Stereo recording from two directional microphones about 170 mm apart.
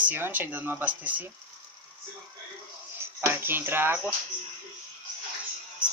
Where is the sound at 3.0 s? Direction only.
15° right (ahead or behind).